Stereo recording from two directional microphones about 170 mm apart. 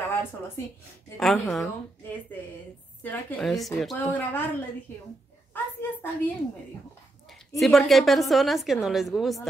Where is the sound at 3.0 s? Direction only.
Centre (ahead or behind).